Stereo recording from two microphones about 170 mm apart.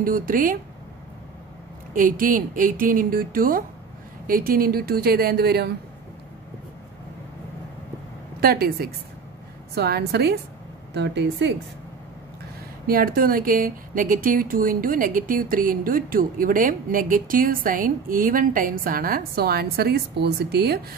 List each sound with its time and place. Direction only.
0.0 s speech: 55° right (ahead or behind)
2.0 s speech: 55° right (ahead or behind)
8.4 s a woman's voice: 65° right (ahead or behind)
10.9 s speech: 90° right
12.8 s speech: 60° right (ahead or behind)